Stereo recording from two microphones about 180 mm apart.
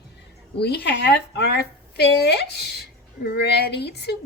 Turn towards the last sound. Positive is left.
turn(degrees=65)  # may be behind; listen again after turning